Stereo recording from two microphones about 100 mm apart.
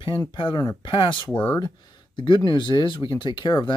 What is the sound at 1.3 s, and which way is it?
Speech, 15° left (ahead or behind).